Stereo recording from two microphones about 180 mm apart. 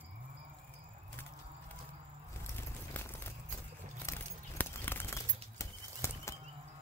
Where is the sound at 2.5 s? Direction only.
10° left (ahead or behind).